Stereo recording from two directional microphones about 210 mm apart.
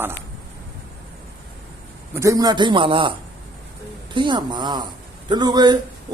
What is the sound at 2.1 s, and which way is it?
A man's voice, 15° right (ahead or behind).